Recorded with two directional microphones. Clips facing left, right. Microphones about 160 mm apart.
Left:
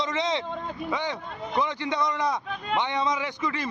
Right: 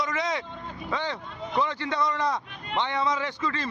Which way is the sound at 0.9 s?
15° left (ahead or behind).